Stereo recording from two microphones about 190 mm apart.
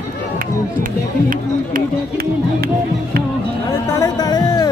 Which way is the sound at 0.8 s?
45° right (ahead or behind).